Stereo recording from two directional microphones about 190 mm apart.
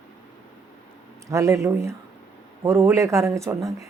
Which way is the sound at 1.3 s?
15° right (ahead or behind).